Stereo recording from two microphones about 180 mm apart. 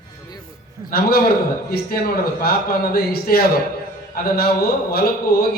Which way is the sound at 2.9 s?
60° left (ahead or behind).